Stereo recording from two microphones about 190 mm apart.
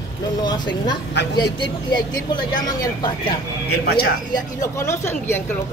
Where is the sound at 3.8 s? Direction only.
55° left (ahead or behind).